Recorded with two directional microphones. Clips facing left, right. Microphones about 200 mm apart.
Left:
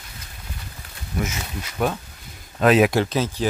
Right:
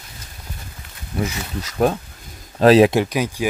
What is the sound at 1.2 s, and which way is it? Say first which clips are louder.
Speech: right 3 dB; 35° right (ahead or behind).